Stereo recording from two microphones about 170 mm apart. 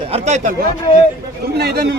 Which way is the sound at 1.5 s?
70° right (ahead or behind).